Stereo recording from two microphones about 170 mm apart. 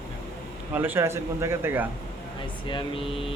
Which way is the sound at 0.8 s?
15° right (ahead or behind).